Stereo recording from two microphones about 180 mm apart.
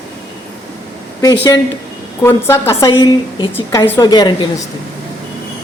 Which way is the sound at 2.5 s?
15° left (ahead or behind).